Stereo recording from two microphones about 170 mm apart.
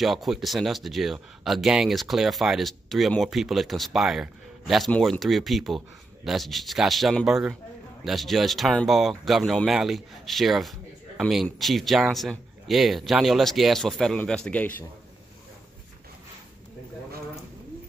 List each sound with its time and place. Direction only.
0.0 s speech: centre (ahead or behind)